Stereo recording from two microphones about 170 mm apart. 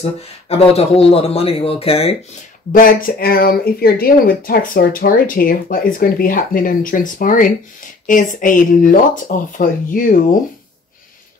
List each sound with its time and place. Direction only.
0.0 s a man's voice: 35° left (ahead or behind)
2.7 s speech: 55° left (ahead or behind)